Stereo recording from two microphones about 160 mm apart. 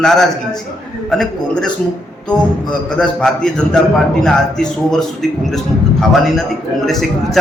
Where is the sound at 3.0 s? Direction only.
5° left (ahead or behind).